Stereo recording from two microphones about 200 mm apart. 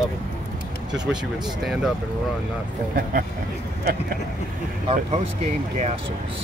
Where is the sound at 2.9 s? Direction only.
45° right (ahead or behind).